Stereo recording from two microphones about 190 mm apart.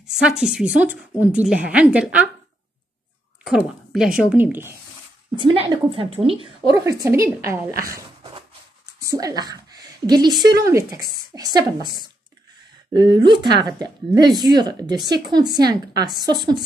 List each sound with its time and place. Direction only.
0.0 s a woman's voice: 5° right (ahead or behind)
3.4 s a woman's voice: centre (ahead or behind)
5.3 s a woman's voice: 25° right (ahead or behind)
6.7 s a woman's voice: 15° right (ahead or behind)
7.9 s a sound: 25° right (ahead or behind)
9.0 s a woman's voice: 20° right (ahead or behind)